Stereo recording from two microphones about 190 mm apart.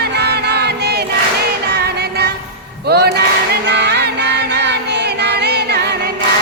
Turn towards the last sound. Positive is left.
turn(degrees=-60)  # may be behind; listen again after turning